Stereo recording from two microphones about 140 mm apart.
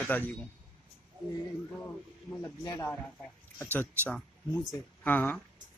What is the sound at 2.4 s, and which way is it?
Speech, 25° left (ahead or behind).